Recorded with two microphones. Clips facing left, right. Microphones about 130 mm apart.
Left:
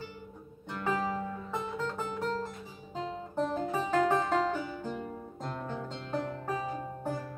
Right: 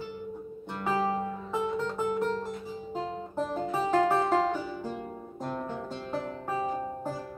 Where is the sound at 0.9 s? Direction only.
35° right (ahead or behind).